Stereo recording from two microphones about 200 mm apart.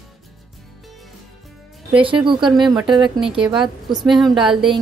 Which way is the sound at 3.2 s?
5° right (ahead or behind).